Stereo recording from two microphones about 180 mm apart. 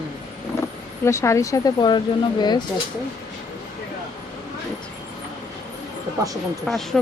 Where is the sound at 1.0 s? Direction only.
15° left (ahead or behind).